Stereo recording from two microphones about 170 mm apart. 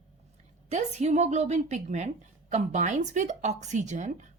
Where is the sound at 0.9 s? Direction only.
40° right (ahead or behind).